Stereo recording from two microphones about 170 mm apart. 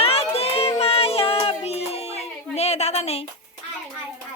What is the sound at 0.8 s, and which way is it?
Music, 35° left (ahead or behind).